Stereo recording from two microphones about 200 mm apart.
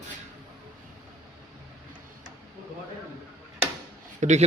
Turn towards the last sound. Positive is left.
turn(degrees=-35)  # may be behind; listen again after turning